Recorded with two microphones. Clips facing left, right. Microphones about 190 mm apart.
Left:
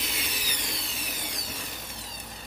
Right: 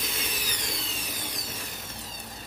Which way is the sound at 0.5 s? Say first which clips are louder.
Right 1 dB; 10° left (ahead or behind).